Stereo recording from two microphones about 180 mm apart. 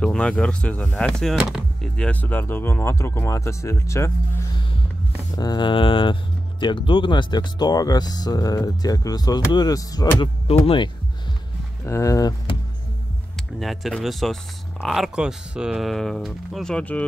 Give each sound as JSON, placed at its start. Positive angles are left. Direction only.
{"t": 0.0, "sound": "speech", "side_deg": 5}
{"t": 5.3, "sound": "speech", "side_deg": 20}
{"t": 10.4, "sound": "speech", "side_deg": 30}
{"t": 11.8, "sound": "speech", "side_deg": 15}
{"t": 13.6, "sound": "speech", "side_deg": 0}